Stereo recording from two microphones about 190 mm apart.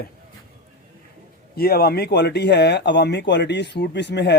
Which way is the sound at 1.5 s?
55° left (ahead or behind).